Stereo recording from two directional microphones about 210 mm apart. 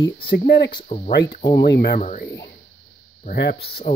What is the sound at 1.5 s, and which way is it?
Speech, 45° left (ahead or behind).